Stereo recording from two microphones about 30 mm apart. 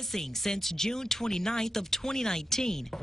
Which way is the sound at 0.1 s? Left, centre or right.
Centre.